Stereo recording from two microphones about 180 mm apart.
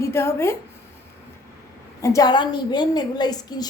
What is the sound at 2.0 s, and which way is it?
A woman's voice, 20° left (ahead or behind).